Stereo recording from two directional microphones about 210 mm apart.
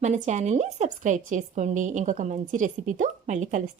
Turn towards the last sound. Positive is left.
turn(degrees=-35)  # may be behind; listen again after turning